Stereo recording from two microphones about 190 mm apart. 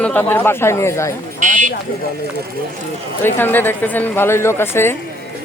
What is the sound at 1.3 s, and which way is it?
Speech, 40° right (ahead or behind).